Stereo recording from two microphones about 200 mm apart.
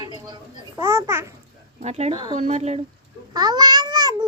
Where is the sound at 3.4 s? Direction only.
20° right (ahead or behind).